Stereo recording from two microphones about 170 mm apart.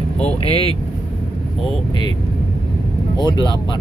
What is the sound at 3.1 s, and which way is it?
Speech, 25° left (ahead or behind).